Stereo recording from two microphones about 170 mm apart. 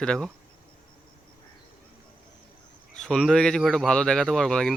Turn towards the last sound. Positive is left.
turn(degrees=5)  # may be behind; listen again after turning